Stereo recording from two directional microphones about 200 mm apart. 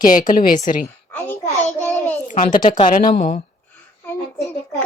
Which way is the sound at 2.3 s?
40° left (ahead or behind).